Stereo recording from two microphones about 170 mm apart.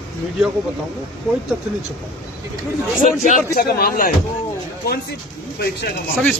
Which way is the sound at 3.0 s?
50° left (ahead or behind).